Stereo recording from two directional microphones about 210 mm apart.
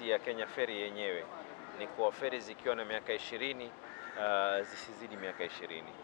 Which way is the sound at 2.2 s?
15° left (ahead or behind).